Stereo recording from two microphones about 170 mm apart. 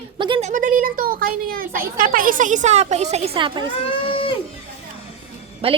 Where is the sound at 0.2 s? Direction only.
30° right (ahead or behind).